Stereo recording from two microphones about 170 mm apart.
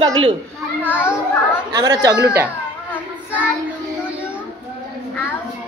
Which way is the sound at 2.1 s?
10° right (ahead or behind).